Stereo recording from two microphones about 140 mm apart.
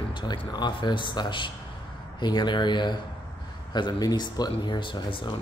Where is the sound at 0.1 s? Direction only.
30° left (ahead or behind).